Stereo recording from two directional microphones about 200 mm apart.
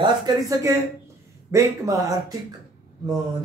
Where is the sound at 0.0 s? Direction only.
20° right (ahead or behind).